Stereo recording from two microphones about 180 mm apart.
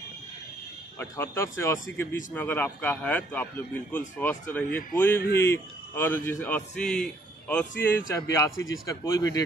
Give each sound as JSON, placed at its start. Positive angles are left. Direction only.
{"t": 0.9, "sound": "speech", "side_deg": 15}
{"t": 8.1, "sound": "speech", "side_deg": 15}
{"t": 8.5, "sound": "speech", "side_deg": 90}
{"t": 8.8, "sound": "speech", "side_deg": 20}